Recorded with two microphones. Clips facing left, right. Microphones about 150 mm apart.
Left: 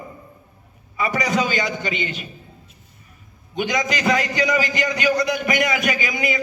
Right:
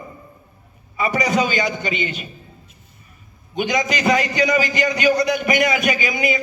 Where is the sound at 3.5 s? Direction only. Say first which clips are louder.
Right 2 dB; 20° right (ahead or behind).